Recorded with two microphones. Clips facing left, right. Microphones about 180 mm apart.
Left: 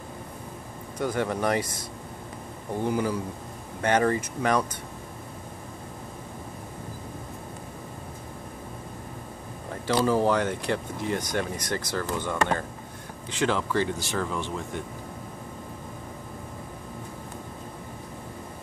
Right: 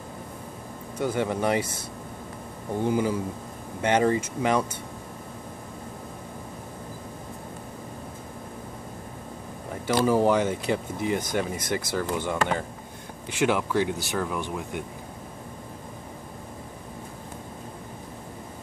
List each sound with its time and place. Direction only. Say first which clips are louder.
0.9 s speech: right 1 dB; 10° right (ahead or behind)
2.8 s speech: right 2 dB; 20° right (ahead or behind)
9.8 s speech: right 1 dB; 15° right (ahead or behind)